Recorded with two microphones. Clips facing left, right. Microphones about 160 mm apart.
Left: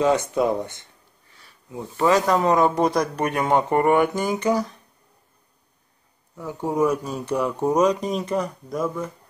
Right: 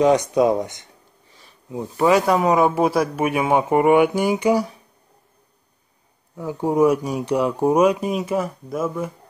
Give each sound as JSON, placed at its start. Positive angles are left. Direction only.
{"t": 0.0, "sound": "speech", "side_deg": -15}
{"t": 6.3, "sound": "speech", "side_deg": -10}